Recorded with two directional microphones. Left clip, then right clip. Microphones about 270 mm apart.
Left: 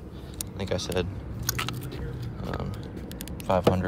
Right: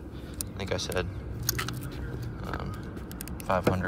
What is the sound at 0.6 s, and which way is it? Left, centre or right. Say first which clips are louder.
Keys jangling: left 2 dB; centre.